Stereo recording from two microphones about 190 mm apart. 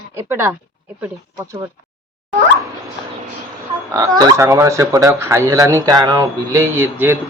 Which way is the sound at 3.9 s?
15° right (ahead or behind).